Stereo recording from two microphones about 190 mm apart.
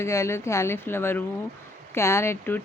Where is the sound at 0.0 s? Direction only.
15° left (ahead or behind).